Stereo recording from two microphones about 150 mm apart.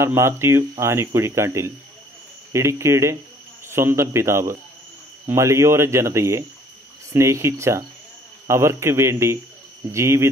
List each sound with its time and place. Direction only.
0.0 s speech: 15° right (ahead or behind)